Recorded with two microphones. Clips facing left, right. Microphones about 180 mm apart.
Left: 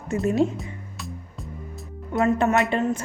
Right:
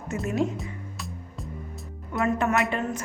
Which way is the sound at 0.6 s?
Centre (ahead or behind).